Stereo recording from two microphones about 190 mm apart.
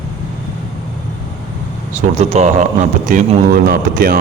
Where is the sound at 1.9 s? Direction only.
35° right (ahead or behind).